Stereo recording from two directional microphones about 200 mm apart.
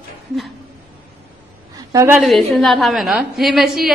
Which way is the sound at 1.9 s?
15° right (ahead or behind).